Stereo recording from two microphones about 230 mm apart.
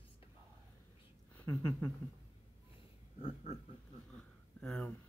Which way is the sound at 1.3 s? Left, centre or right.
Centre.